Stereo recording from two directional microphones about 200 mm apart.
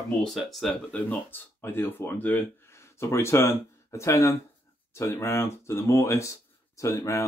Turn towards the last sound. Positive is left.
turn(degrees=15)  # may be behind; listen again after turning